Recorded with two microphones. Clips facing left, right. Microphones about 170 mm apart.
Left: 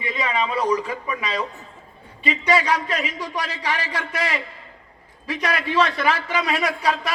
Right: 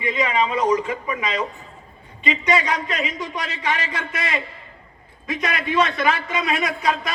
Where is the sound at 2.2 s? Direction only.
35° left (ahead or behind).